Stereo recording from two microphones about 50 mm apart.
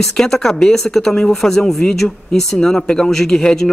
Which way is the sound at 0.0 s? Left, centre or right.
Centre.